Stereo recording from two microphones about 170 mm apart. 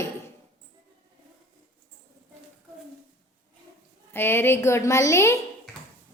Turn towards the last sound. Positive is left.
turn(degrees=15)  # may be behind; listen again after turning